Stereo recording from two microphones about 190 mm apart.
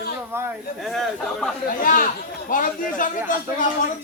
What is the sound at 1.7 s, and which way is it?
Speech, 45° left (ahead or behind).